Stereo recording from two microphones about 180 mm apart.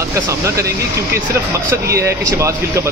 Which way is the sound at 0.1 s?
15° right (ahead or behind).